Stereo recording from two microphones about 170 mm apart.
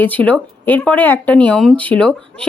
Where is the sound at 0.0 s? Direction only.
10° left (ahead or behind).